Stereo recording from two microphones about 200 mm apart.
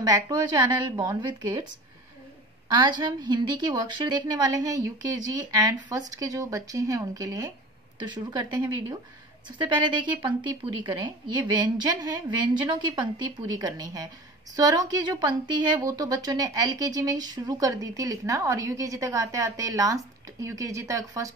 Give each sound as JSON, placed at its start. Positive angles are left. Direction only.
{"t": 0.0, "sound": "a woman's voice", "side_deg": -15}
{"t": 2.7, "sound": "a woman's voice", "side_deg": -20}